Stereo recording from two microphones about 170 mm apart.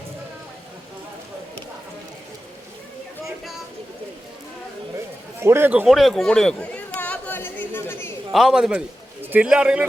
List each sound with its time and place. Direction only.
5.4 s a man's voice: 15° right (ahead or behind)
5.8 s chatter: centre (ahead or behind)
8.3 s a man's voice: centre (ahead or behind)